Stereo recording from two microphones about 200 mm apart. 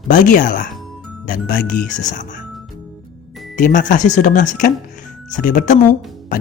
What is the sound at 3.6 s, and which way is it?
Speech, 40° left (ahead or behind).